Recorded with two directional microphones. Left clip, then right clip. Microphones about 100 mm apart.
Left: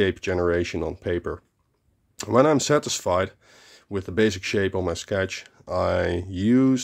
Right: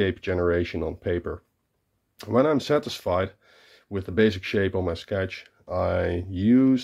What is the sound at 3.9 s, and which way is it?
Speech, 30° left (ahead or behind).